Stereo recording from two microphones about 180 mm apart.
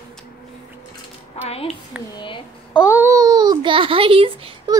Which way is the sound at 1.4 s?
35° left (ahead or behind).